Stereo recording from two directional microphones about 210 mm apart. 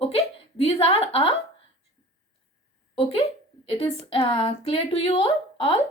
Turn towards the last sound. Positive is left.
turn(degrees=25)  # may be behind; listen again after turning